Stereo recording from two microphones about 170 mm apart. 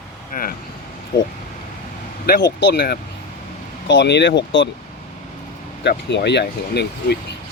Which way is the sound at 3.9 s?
90° left.